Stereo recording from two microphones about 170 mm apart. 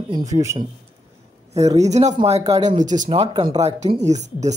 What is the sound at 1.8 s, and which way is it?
Speech, 40° right (ahead or behind).